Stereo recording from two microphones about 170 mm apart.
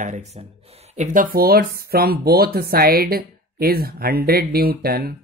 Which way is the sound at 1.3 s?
60° right (ahead or behind).